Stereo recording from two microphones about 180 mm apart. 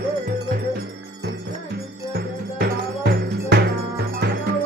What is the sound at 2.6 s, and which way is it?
Music, 65° right (ahead or behind).